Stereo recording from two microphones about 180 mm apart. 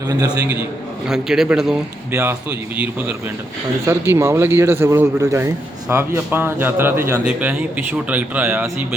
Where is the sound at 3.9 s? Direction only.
15° right (ahead or behind).